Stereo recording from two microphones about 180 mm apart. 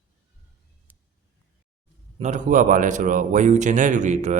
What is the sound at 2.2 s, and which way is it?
A man's voice, 40° right (ahead or behind).